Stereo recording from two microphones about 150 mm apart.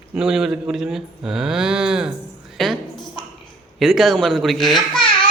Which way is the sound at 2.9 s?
30° left (ahead or behind).